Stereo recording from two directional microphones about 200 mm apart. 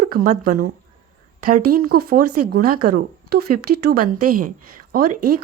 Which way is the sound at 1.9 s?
50° right (ahead or behind).